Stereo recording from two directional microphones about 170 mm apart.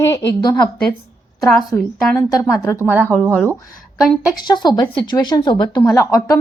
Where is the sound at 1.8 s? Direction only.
20° left (ahead or behind).